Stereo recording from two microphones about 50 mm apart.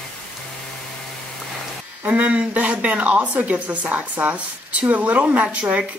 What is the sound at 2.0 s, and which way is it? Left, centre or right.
A woman's voice, right.